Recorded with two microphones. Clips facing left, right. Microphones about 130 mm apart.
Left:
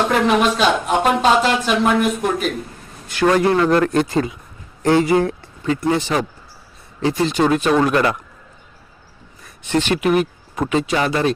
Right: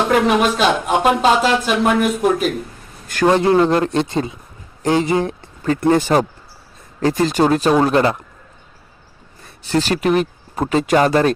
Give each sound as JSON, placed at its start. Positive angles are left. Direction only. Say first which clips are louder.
{"t": 0.1, "sound": "speech", "louder": "right 1 dB", "side_deg": -5}
{"t": 3.2, "sound": "speech", "louder": "right 2 dB", "side_deg": -25}
{"t": 5.4, "sound": "speech", "louder": "right 2 dB", "side_deg": -50}
{"t": 9.4, "sound": "speech", "louder": "right 1 dB", "side_deg": -35}